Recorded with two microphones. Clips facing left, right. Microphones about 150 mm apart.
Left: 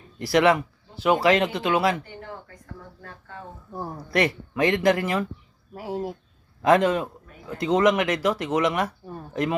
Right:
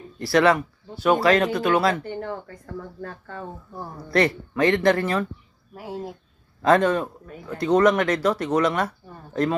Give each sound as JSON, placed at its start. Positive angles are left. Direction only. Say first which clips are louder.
{"t": 0.2, "sound": "speech", "louder": "right 1 dB", "side_deg": 20}
{"t": 3.0, "sound": "speech", "louder": "right 6 dB", "side_deg": -40}
{"t": 3.7, "sound": "a man's voice", "louder": "even", "side_deg": 15}